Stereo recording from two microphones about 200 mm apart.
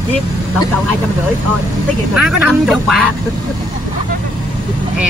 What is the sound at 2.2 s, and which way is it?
Speech, 5° right (ahead or behind).